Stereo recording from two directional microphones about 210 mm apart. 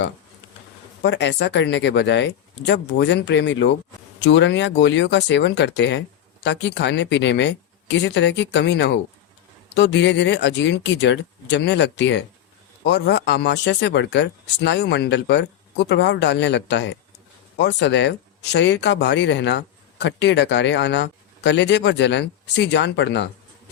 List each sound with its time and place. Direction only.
1.0 s speech: 55° left (ahead or behind)